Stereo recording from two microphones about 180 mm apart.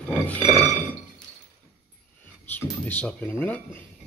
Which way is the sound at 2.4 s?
10° left (ahead or behind).